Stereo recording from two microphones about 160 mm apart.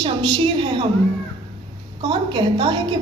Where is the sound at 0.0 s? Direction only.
30° right (ahead or behind).